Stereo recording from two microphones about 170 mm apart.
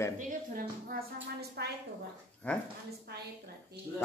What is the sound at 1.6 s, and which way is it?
Speech, 75° right (ahead or behind).